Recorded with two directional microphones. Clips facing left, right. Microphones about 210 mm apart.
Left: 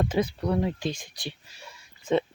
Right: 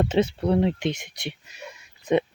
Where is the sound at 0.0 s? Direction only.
25° right (ahead or behind).